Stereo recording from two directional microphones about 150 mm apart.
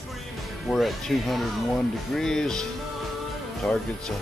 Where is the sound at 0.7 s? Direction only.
Centre (ahead or behind).